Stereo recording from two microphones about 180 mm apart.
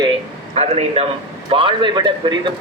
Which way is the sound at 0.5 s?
35° right (ahead or behind).